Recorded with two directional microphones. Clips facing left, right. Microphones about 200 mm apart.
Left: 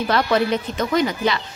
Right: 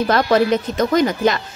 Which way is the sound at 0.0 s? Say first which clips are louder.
Right 4 dB; 45° right (ahead or behind).